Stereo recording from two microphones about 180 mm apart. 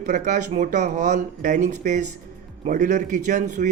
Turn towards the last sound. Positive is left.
turn(degrees=-45)  # may be behind; listen again after turning